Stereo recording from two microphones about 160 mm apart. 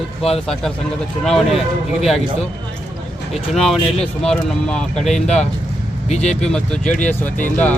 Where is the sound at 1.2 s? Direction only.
Centre (ahead or behind).